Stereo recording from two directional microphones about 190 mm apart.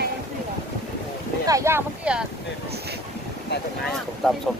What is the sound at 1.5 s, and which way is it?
Speech, 15° right (ahead or behind).